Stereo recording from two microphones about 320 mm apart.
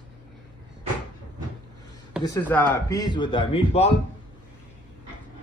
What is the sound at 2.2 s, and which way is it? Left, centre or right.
A man's voice, centre.